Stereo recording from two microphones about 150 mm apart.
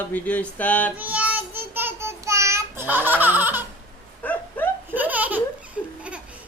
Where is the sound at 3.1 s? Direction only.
10° right (ahead or behind).